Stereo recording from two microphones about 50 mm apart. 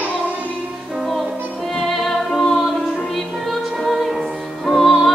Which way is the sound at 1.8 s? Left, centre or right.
Centre.